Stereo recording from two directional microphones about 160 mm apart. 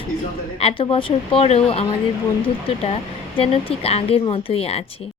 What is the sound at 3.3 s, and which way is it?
A woman's voice, 35° left (ahead or behind).